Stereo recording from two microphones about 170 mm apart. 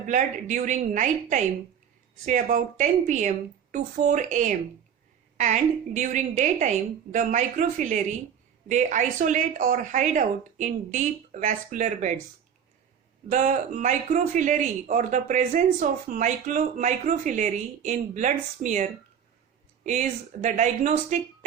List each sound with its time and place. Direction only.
0.0 s speech: 45° right (ahead or behind)
13.3 s speech: 45° right (ahead or behind)